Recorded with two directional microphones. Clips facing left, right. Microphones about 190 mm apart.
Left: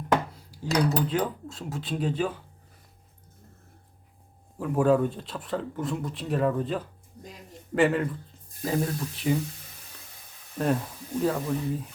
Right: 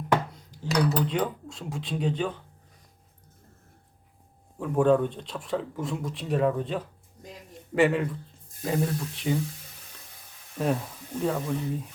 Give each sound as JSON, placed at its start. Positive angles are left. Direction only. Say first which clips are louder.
{"t": 0.3, "sound": "speech", "louder": "even", "side_deg": 10}
{"t": 4.5, "sound": "speech", "louder": "right 1 dB", "side_deg": 5}
{"t": 10.6, "sound": "speech", "louder": "left 1 dB", "side_deg": 0}